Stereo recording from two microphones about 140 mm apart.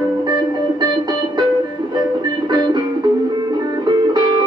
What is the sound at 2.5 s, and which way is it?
Music, 30° right (ahead or behind).